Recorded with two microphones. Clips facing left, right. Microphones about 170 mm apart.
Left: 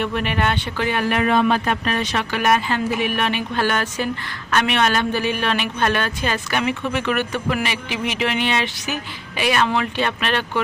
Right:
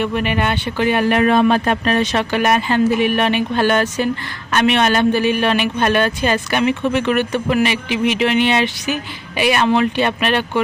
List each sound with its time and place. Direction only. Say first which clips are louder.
0.0 s speech: right 3 dB; 5° right (ahead or behind)
1.3 s speech: right 4 dB; 35° right (ahead or behind)
2.1 s a man's voice: right 3 dB; 25° right (ahead or behind)